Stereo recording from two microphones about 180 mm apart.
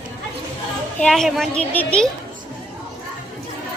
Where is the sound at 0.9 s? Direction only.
5° left (ahead or behind).